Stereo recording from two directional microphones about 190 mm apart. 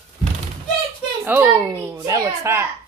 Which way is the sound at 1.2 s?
10° right (ahead or behind).